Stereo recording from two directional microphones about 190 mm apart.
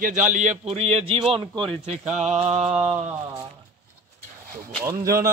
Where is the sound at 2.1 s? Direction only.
35° right (ahead or behind).